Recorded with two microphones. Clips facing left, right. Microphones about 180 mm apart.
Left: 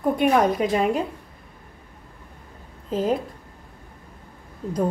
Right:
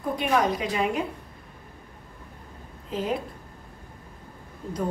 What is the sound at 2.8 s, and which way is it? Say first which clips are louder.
Speech: left 6 dB; 40° left (ahead or behind).